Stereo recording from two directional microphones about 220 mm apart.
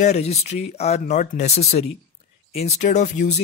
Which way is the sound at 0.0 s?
30° left (ahead or behind).